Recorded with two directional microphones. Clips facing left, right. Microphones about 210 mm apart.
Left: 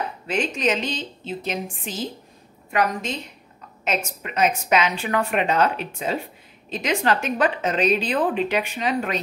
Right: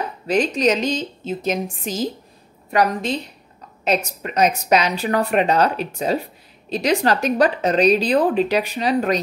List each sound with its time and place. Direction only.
0.3 s a woman's voice: 40° right (ahead or behind)